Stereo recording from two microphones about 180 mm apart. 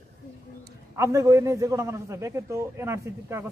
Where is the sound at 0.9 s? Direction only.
15° right (ahead or behind).